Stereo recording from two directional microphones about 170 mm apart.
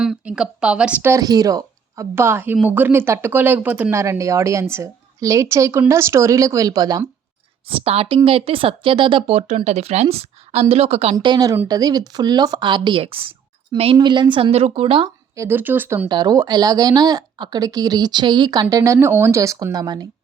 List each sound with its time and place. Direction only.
0.0 s speech: 5° right (ahead or behind); by 7.0 s 20° right (ahead or behind)
7.9 s speech: 35° right (ahead or behind)
15.4 s speech: 10° right (ahead or behind)
16.0 s speech: 25° right (ahead or behind)